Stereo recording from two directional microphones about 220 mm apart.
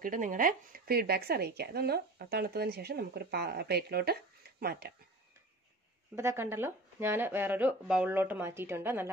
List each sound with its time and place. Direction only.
0.0 s speech: 35° right (ahead or behind)
6.1 s speech: 10° right (ahead or behind)